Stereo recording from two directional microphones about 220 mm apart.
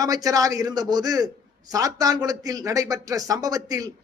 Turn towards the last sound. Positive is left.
turn(degrees=-15)  # may be behind; listen again after turning